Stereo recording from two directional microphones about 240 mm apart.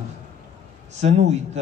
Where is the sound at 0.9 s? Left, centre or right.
Right.